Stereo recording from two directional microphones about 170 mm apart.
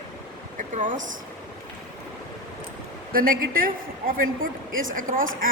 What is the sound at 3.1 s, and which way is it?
A woman's voice, 55° right (ahead or behind).